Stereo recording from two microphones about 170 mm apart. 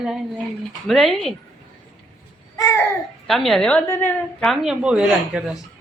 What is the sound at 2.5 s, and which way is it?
Babbling, 20° left (ahead or behind).